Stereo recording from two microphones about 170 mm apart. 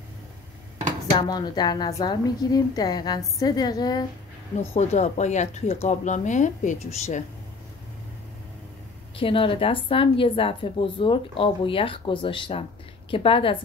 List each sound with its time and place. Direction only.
1.1 s a woman's voice: 25° left (ahead or behind)
4.7 s speech: 40° left (ahead or behind)
9.1 s a woman's voice: 30° left (ahead or behind)